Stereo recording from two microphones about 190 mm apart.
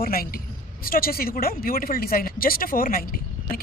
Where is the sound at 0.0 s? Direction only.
50° left (ahead or behind).